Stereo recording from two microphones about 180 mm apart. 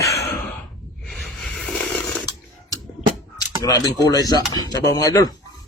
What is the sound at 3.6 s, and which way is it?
Speech, 20° left (ahead or behind).